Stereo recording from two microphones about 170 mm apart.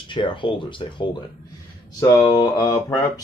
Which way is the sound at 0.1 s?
30° left (ahead or behind).